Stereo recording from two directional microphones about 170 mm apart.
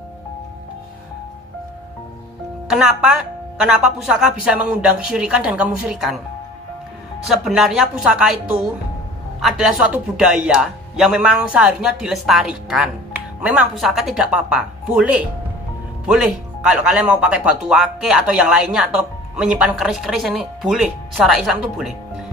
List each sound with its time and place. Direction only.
2.7 s speech: 5° right (ahead or behind)
7.2 s speech: 5° right (ahead or behind)